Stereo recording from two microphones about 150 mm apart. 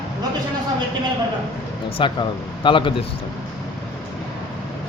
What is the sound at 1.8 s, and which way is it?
Speech, 35° left (ahead or behind).